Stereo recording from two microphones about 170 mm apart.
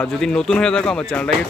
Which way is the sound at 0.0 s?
5° left (ahead or behind).